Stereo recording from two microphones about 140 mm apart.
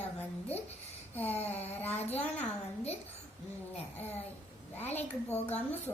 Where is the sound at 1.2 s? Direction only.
50° left (ahead or behind).